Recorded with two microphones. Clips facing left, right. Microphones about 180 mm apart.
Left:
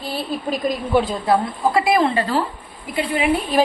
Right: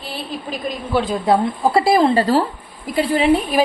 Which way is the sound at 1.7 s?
35° right (ahead or behind).